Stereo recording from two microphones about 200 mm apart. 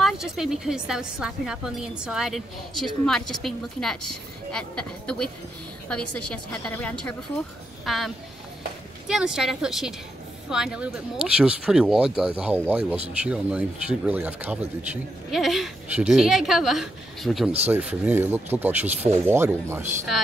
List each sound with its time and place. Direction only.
0.0 s a woman's voice: centre (ahead or behind)